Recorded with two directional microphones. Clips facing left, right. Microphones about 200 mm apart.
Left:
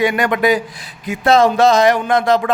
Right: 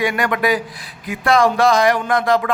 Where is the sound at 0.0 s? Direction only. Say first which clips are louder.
Left 3 dB; 25° left (ahead or behind).